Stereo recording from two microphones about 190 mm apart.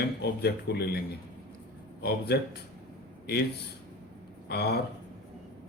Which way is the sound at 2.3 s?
60° left (ahead or behind).